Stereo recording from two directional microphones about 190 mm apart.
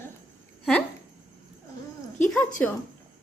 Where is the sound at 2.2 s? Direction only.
5° left (ahead or behind).